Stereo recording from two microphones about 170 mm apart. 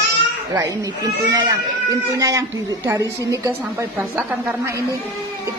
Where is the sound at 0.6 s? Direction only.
25° right (ahead or behind).